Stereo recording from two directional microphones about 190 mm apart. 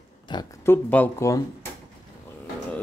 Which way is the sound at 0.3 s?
20° left (ahead or behind).